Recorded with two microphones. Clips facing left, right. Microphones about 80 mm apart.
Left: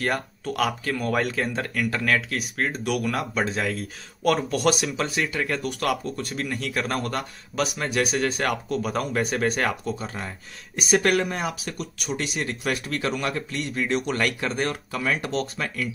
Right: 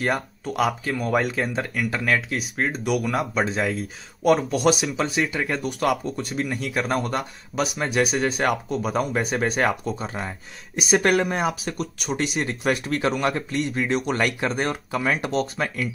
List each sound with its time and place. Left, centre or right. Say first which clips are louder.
0.0 s speech: right 2 dB; centre
7.9 s speech: right 3 dB; centre
9.6 s speech: right 3 dB; centre